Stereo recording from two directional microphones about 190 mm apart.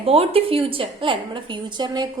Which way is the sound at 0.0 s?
30° right (ahead or behind).